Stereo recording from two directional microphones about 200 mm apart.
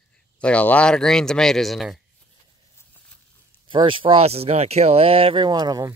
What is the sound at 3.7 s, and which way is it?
Speech, 25° right (ahead or behind).